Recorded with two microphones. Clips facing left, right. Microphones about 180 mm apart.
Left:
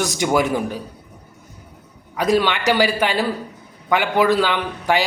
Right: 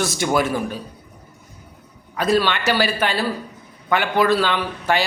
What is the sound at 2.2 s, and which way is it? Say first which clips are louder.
A man's voice: left 1 dB; 15° left (ahead or behind).